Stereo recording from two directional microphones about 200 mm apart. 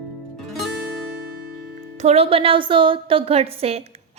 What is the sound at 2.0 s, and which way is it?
A woman's voice, 30° right (ahead or behind).